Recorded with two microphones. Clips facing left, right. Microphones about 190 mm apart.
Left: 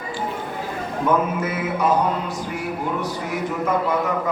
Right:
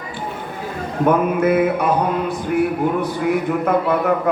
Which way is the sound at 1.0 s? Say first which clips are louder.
Right 6 dB; 60° right (ahead or behind).